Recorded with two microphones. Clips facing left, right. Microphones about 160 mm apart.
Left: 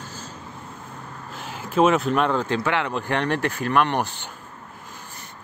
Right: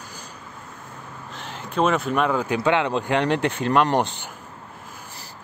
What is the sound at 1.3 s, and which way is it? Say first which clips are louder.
Speech: left 3 dB; 5° left (ahead or behind).